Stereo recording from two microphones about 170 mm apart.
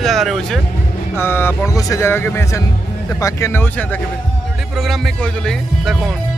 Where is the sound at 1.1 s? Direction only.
15° left (ahead or behind).